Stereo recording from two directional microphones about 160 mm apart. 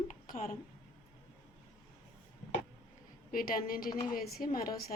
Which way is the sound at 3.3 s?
60° left (ahead or behind).